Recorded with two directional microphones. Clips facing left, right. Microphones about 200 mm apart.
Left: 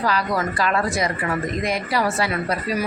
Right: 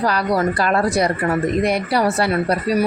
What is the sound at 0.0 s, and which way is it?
A woman's voice, 35° right (ahead or behind).